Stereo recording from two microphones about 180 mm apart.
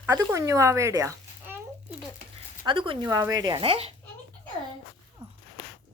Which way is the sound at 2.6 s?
30° right (ahead or behind).